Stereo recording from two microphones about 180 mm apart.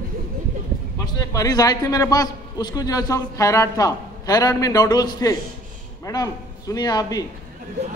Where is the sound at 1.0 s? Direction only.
20° left (ahead or behind).